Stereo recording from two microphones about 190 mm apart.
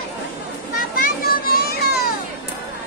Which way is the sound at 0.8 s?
50° left (ahead or behind).